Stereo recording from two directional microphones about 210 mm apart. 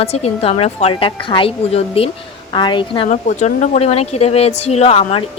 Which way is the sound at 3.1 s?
35° left (ahead or behind).